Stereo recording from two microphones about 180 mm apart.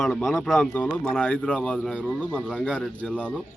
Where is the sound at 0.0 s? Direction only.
5° left (ahead or behind).